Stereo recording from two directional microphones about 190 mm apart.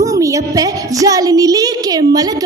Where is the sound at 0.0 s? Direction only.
15° right (ahead or behind).